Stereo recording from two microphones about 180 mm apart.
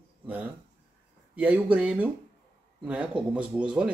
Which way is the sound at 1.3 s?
10° right (ahead or behind).